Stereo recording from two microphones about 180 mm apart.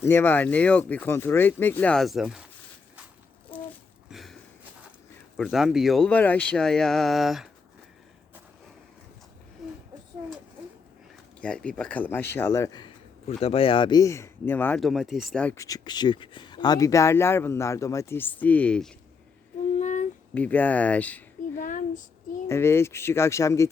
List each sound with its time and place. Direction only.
0.0 s speech: 10° left (ahead or behind)
4.1 s a sound: centre (ahead or behind)
5.4 s speech: centre (ahead or behind)
9.6 s a sound: centre (ahead or behind)
11.3 s speech: 5° left (ahead or behind)
13.2 s speech: 35° left (ahead or behind); by 15.6 s 5° left (ahead or behind)
15.6 s speech: 20° left (ahead or behind); by 18.9 s 5° left (ahead or behind)
19.8 s a sound: 45° left (ahead or behind)
20.3 s speech: 10° left (ahead or behind)
21.6 s speech: 50° left (ahead or behind)
22.4 s speech: 15° left (ahead or behind)